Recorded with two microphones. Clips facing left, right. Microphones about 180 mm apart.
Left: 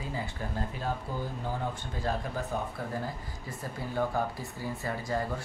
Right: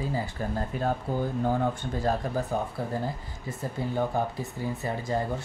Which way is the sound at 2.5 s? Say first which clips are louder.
Right 3 dB; 35° right (ahead or behind).